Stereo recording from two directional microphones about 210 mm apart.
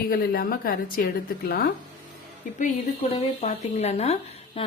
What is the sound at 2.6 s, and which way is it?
Speech, 30° left (ahead or behind).